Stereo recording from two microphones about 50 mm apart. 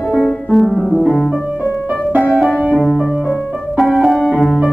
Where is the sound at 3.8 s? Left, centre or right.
Centre.